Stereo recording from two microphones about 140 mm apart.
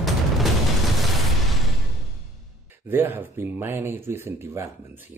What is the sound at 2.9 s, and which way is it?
Speech, 15° right (ahead or behind).